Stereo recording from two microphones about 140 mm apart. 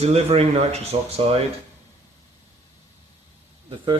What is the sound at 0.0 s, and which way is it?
Speech, 50° right (ahead or behind).